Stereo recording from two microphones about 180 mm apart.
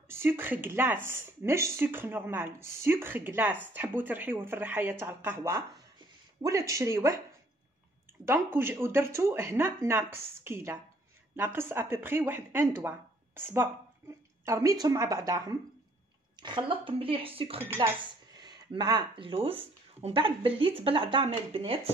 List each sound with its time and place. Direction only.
0.1 s speech: 15° right (ahead or behind)
8.3 s speech: 10° right (ahead or behind); by 21.7 s 30° right (ahead or behind)